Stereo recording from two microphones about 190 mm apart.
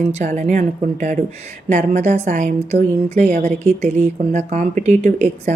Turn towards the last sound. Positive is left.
turn(degrees=-40)  # may be behind; listen again after turning